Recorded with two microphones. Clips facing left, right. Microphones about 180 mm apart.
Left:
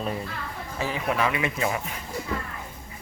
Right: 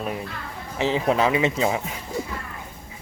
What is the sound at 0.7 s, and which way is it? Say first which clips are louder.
Speech: right 6 dB; 25° right (ahead or behind).